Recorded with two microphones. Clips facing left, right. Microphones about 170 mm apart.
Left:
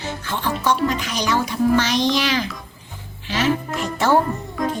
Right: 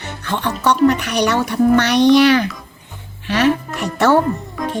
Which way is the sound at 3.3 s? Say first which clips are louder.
Right 5 dB; 65° right (ahead or behind).